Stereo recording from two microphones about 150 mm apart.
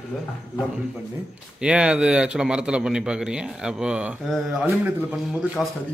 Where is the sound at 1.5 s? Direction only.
5° right (ahead or behind).